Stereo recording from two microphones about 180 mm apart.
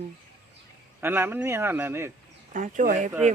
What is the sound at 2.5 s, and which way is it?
Speech, 45° right (ahead or behind).